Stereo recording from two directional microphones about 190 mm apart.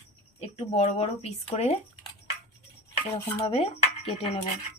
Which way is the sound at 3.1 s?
30° left (ahead or behind).